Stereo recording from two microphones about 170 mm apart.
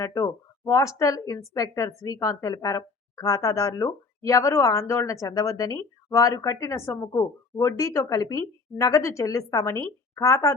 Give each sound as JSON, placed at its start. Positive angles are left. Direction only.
{"t": 0.0, "sound": "a woman's voice", "side_deg": 20}